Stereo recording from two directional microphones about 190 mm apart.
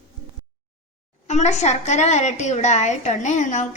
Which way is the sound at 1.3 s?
35° left (ahead or behind).